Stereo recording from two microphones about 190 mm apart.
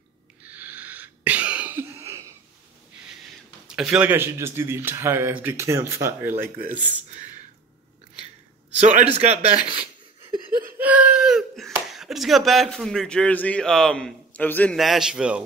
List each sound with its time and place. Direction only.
0.4 s sneeze: 10° right (ahead or behind)
3.6 s speech: 5° right (ahead or behind)
8.7 s a man's voice: 40° right (ahead or behind)
10.8 s speech: 10° right (ahead or behind)